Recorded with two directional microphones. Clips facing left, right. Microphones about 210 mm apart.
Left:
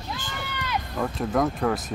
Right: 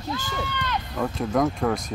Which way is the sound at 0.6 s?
5° left (ahead or behind).